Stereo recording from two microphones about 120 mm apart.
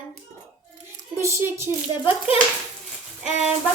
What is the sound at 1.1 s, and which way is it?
A child's voice, 20° right (ahead or behind).